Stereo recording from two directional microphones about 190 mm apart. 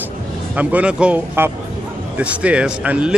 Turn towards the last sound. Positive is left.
turn(degrees=-5)  # may be behind; listen again after turning